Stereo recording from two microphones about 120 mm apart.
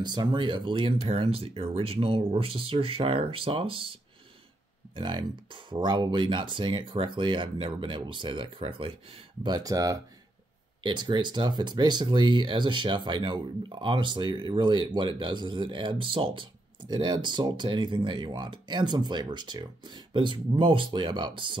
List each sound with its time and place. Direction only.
0.0 s speech: 35° right (ahead or behind)
9.4 s speech: 35° right (ahead or behind)